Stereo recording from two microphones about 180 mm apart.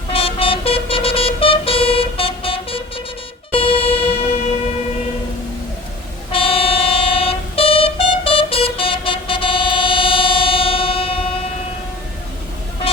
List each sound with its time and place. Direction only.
0.1 s vehicle: 30° left (ahead or behind)
3.5 s music: 30° left (ahead or behind)
6.3 s music: 30° left (ahead or behind)